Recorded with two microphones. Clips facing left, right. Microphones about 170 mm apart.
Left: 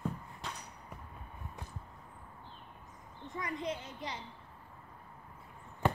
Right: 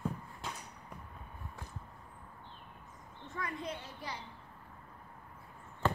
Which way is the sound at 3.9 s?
20° left (ahead or behind).